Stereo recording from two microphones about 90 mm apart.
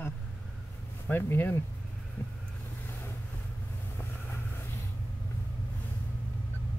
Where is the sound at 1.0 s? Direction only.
20° left (ahead or behind).